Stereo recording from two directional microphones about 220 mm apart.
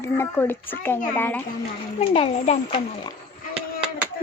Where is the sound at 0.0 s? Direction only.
10° left (ahead or behind).